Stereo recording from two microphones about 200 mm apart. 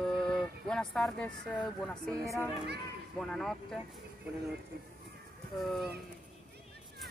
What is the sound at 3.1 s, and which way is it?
Speech, 5° left (ahead or behind).